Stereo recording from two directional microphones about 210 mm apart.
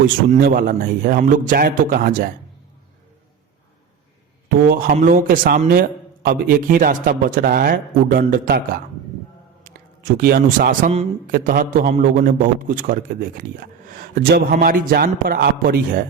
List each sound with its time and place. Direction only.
0.0 s a man's voice: 45° right (ahead or behind)
4.4 s a man's voice: 40° right (ahead or behind)
10.2 s a man's voice: 45° right (ahead or behind)